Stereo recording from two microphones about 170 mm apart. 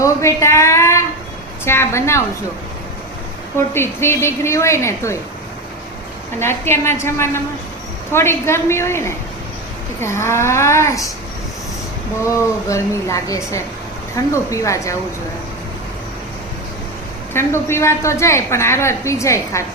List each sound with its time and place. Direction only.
0.0 s a woman's voice: 20° left (ahead or behind)
3.8 s a woman's voice: 15° left (ahead or behind)
6.4 s a woman's voice: 15° left (ahead or behind)
12.2 s a woman's voice: 15° left (ahead or behind)
17.3 s a woman's voice: 15° left (ahead or behind)